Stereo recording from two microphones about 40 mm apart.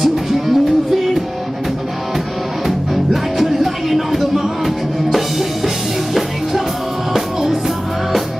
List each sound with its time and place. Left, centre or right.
0.0 s music: centre
2.6 s music: centre